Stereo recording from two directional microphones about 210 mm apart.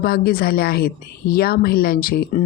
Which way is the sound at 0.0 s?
45° left (ahead or behind).